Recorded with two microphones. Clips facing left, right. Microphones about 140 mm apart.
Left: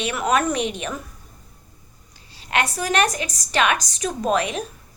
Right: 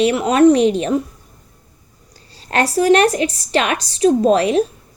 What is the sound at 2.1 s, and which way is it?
A woman's voice, 40° right (ahead or behind).